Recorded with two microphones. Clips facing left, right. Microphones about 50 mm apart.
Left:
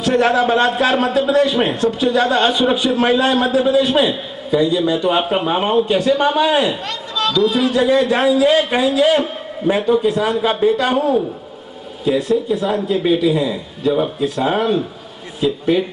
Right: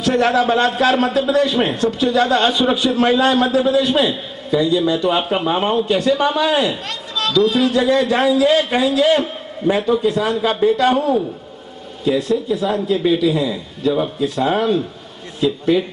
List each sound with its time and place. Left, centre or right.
0.0 s a man's voice: centre
7.3 s a man's voice: left